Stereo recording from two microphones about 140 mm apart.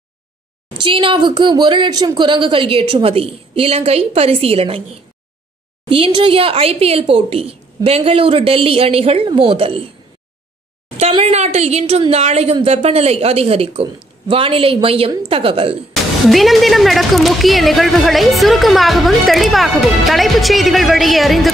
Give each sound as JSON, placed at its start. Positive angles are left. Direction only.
{"t": 0.8, "sound": "a woman's voice", "side_deg": -40}
{"t": 5.9, "sound": "a woman's voice", "side_deg": -40}
{"t": 11.0, "sound": "a woman's voice", "side_deg": -45}
{"t": 15.9, "sound": "speech", "side_deg": 0}